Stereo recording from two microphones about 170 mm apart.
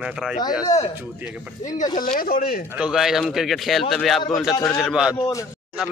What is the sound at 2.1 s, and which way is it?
Speech, 55° left (ahead or behind).